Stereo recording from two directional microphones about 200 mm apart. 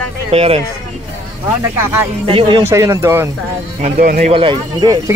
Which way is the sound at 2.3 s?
25° right (ahead or behind).